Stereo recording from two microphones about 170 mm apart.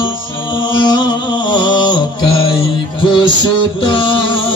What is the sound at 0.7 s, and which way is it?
Music, 25° left (ahead or behind).